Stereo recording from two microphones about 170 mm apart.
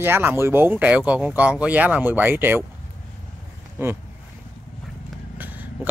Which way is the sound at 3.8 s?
15° right (ahead or behind).